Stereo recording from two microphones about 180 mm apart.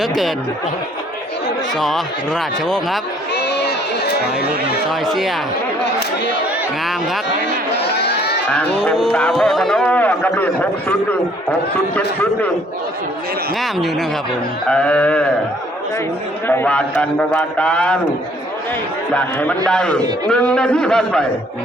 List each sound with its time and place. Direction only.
1.8 s speech: centre (ahead or behind)
3.3 s crowd: 70° left (ahead or behind)
4.9 s speech: centre (ahead or behind)
7.8 s crowd: 70° left (ahead or behind)
8.4 s speech: 5° left (ahead or behind)
11.9 s a man's voice: 10° left (ahead or behind)
13.6 s speech: centre (ahead or behind)
16.5 s a man's voice: 10° left (ahead or behind)
19.1 s a man's voice: 5° left (ahead or behind)